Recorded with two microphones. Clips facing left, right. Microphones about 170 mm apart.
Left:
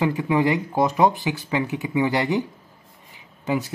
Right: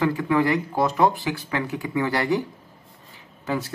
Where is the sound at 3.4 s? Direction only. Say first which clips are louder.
Left 3 dB; 15° left (ahead or behind).